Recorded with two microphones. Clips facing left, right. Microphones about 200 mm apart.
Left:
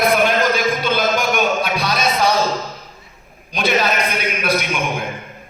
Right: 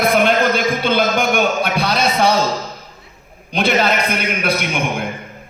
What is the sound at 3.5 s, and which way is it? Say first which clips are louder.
A man's voice: right 2 dB; 55° right (ahead or behind).